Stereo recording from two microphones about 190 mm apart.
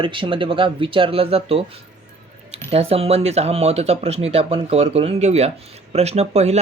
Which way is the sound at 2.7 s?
30° right (ahead or behind).